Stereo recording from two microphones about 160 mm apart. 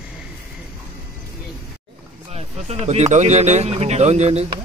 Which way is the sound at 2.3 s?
40° right (ahead or behind).